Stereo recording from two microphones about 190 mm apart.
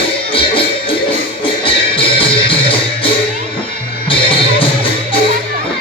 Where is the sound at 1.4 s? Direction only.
25° left (ahead or behind).